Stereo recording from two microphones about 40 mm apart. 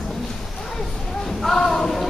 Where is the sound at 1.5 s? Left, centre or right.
Centre.